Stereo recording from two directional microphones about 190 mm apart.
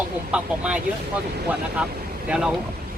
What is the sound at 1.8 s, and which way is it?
Speech, 5° right (ahead or behind).